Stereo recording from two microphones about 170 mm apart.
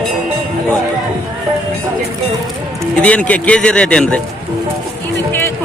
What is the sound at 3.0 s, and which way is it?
Speech, 10° left (ahead or behind).